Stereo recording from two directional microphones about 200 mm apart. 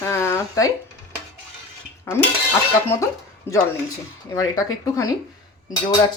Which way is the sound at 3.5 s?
10° left (ahead or behind).